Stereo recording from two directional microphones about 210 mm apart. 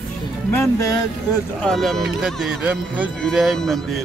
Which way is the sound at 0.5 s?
15° left (ahead or behind).